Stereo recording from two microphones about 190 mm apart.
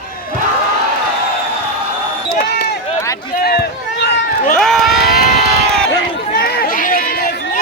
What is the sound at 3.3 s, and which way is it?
Run, 55° left (ahead or behind).